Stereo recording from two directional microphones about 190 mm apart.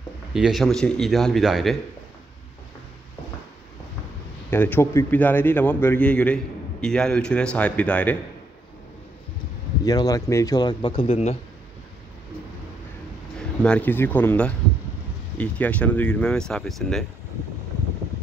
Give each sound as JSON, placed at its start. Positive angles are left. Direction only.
{"t": 0.3, "sound": "a man's voice", "side_deg": 0}
{"t": 4.5, "sound": "a man's voice", "side_deg": 10}
{"t": 9.8, "sound": "a man's voice", "side_deg": 20}
{"t": 13.6, "sound": "a man's voice", "side_deg": 5}